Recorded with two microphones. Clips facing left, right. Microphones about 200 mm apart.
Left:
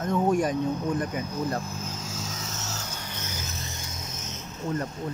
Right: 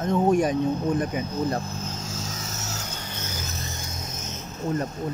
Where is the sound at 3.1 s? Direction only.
35° right (ahead or behind).